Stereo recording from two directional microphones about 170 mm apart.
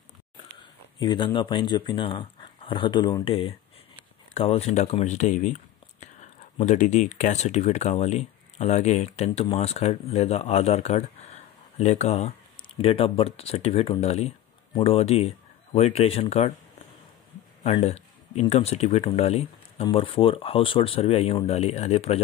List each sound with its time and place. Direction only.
0.9 s speech: 25° left (ahead or behind)
17.6 s speech: 35° left (ahead or behind)